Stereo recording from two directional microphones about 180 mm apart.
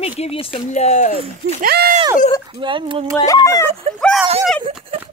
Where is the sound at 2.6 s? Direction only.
30° right (ahead or behind).